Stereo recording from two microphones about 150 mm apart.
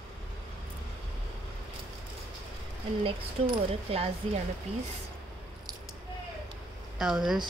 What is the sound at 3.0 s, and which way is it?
Speech, 40° right (ahead or behind).